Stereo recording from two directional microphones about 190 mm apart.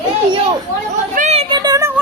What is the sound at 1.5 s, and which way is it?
Child singing, 20° right (ahead or behind).